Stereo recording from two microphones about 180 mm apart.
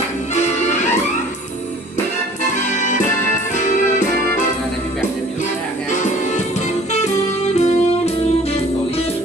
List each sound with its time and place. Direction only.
0.4 s music: 40° left (ahead or behind)
2.6 s music: 45° left (ahead or behind)
5.9 s music: 45° left (ahead or behind)